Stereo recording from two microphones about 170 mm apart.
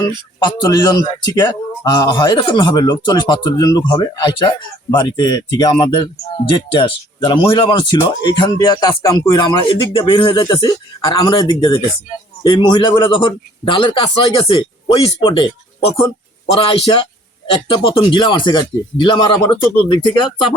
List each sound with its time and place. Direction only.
0.3 s speech: 25° left (ahead or behind)
16.6 s a man's voice: 30° left (ahead or behind)